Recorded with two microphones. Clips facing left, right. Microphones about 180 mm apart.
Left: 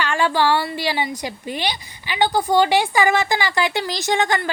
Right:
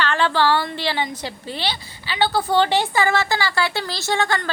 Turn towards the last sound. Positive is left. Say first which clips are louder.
# left 2 dB
turn(degrees=15)  # may be behind; listen again after turning